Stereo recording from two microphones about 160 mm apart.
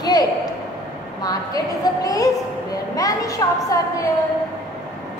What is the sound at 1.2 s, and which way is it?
A woman's voice, 25° left (ahead or behind).